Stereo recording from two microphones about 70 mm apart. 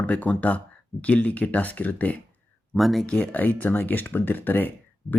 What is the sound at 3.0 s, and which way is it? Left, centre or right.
Speech, centre.